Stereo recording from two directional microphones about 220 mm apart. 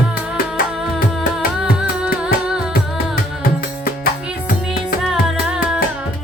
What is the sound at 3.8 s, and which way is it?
Music, 40° left (ahead or behind).